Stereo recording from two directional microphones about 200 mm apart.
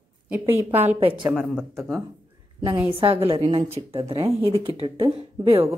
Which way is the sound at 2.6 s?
10° right (ahead or behind).